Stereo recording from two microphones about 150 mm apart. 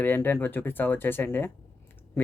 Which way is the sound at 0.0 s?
15° left (ahead or behind).